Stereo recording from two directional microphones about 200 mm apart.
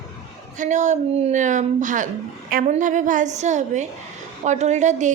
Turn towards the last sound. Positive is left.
turn(degrees=-35)  # may be behind; listen again after turning